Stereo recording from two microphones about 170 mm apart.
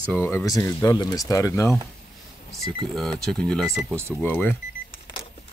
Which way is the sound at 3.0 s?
5° left (ahead or behind).